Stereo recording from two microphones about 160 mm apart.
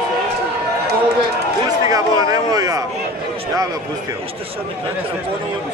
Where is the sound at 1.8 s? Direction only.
20° right (ahead or behind).